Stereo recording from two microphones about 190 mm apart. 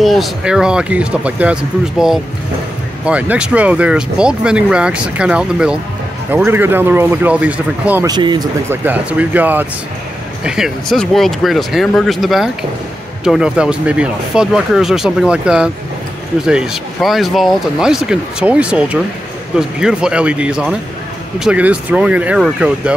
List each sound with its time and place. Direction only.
0.0 s a man's voice: centre (ahead or behind)
8.1 s speech: 20° right (ahead or behind)
8.6 s a man's voice: 10° right (ahead or behind)